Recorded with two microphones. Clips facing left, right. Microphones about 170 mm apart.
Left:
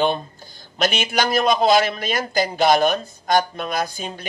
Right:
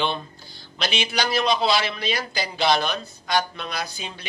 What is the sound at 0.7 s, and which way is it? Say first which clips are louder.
A man's voice: left 5 dB; 50° left (ahead or behind).